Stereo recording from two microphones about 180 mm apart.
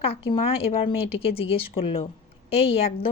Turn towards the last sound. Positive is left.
turn(degrees=35)  # may be behind; listen again after turning